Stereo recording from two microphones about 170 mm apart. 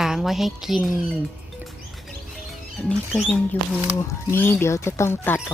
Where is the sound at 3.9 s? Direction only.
15° left (ahead or behind).